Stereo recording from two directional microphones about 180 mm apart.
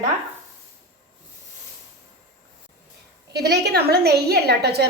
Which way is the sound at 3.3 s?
65° right (ahead or behind).